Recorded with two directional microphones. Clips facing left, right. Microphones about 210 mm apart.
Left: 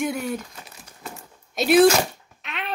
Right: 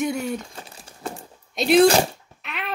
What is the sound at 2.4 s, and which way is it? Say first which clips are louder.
Cat: even; centre (ahead or behind).